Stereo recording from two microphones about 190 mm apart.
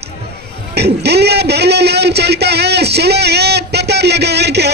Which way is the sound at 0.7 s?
60° right (ahead or behind).